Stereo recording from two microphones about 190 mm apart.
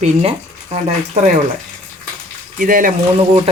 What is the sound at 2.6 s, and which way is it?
Speech, 45° right (ahead or behind).